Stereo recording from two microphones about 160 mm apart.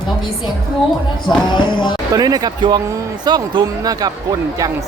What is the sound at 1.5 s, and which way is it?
Music, 30° left (ahead or behind).